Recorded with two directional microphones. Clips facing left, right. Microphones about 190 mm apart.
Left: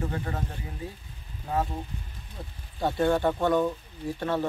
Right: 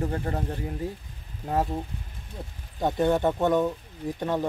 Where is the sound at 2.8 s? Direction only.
20° right (ahead or behind).